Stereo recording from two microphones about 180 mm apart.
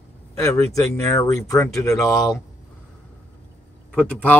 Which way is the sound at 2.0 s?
Centre (ahead or behind).